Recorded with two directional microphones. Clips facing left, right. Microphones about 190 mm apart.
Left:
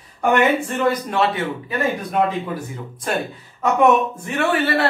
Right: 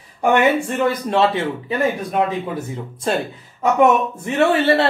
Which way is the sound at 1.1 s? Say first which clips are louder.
Right 3 dB; 25° right (ahead or behind).